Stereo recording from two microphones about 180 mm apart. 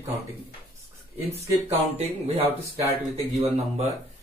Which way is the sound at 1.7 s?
35° right (ahead or behind).